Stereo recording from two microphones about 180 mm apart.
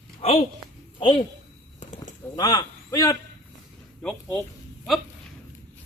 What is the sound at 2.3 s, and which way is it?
Speech, 20° left (ahead or behind).